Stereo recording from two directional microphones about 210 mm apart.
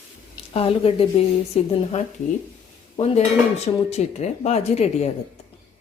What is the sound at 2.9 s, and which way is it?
Cutlery, 30° left (ahead or behind).